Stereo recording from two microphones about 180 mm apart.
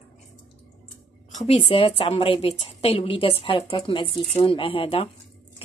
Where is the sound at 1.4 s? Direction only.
35° left (ahead or behind).